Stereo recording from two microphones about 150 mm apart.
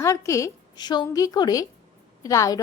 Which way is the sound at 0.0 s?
20° left (ahead or behind).